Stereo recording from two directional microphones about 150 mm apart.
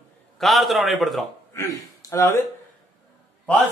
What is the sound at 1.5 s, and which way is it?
Speech, 20° left (ahead or behind).